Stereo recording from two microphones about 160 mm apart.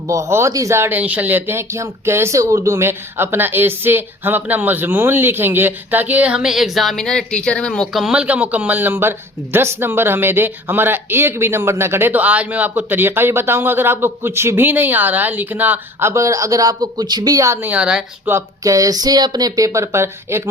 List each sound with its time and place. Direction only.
0.1 s speech: 20° right (ahead or behind)
18.3 s speech: 20° right (ahead or behind)